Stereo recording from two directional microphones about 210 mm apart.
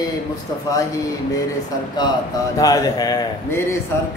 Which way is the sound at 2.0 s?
20° left (ahead or behind).